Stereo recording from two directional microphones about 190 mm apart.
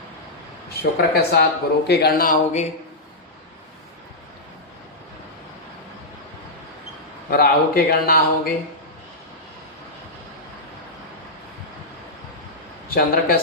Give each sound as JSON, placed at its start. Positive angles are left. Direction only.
{"t": 0.8, "sound": "a man's voice", "side_deg": 55}
{"t": 7.3, "sound": "a man's voice", "side_deg": 50}
{"t": 12.9, "sound": "a man's voice", "side_deg": 50}